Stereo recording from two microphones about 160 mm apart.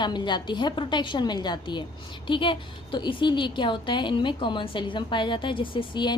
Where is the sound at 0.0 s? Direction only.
30° left (ahead or behind).